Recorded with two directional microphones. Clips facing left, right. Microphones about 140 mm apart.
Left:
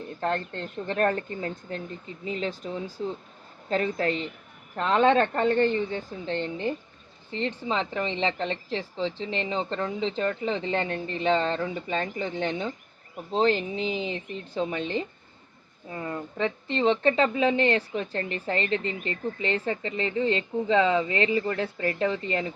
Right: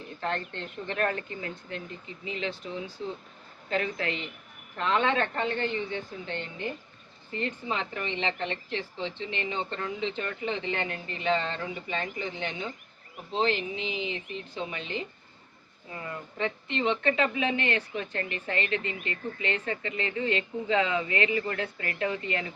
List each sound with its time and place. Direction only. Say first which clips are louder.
0.2 s a woman's voice: left 4 dB; 40° left (ahead or behind)